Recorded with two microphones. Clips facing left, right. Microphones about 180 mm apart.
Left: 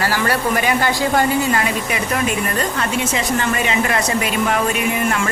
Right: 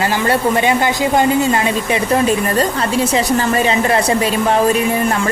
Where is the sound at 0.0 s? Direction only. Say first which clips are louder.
Right 4 dB; 20° right (ahead or behind).